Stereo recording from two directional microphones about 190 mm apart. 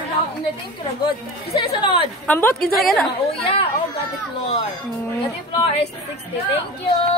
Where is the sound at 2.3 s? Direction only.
10° left (ahead or behind).